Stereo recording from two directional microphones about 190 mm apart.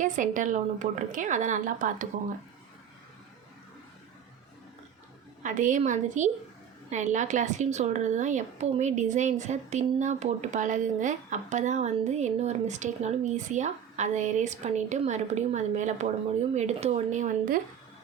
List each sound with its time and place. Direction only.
0.0 s a woman's voice: 40° right (ahead or behind)
5.4 s a woman's voice: 40° right (ahead or behind)